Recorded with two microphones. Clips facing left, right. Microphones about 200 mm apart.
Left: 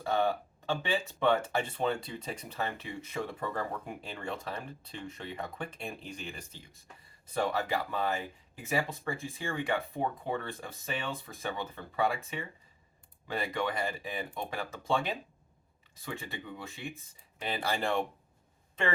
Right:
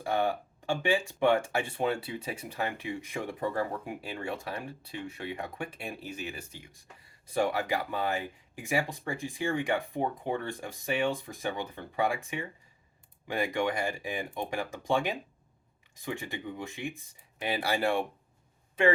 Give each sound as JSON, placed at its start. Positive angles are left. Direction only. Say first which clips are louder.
{"t": 0.0, "sound": "speech", "louder": "even", "side_deg": -15}